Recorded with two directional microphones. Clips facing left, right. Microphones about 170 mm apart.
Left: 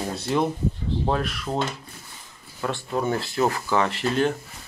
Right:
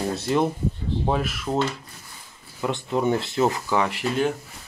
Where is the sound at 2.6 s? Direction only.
20° right (ahead or behind).